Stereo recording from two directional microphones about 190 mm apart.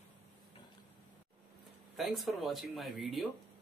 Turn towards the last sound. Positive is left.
turn(degrees=0)  # may be behind; listen again after turning